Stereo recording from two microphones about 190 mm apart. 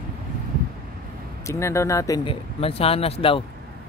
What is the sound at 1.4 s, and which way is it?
Speech, 15° left (ahead or behind).